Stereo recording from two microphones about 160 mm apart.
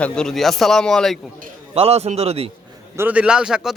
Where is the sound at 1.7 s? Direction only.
40° right (ahead or behind).